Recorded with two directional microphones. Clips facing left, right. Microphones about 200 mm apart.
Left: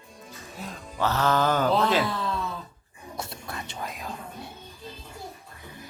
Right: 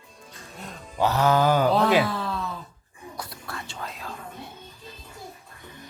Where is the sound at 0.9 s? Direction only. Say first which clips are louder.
Right 3 dB; 15° right (ahead or behind).